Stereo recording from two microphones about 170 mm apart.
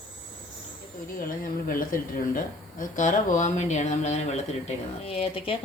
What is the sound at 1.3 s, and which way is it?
A woman's voice, 55° left (ahead or behind).